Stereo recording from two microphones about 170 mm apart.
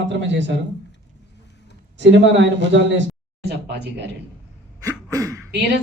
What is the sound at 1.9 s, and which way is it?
Speech, 90° right.